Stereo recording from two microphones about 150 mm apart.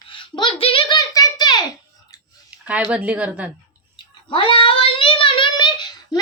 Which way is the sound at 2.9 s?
10° right (ahead or behind).